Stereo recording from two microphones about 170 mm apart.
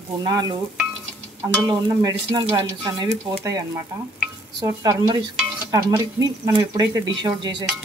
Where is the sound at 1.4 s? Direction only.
20° right (ahead or behind).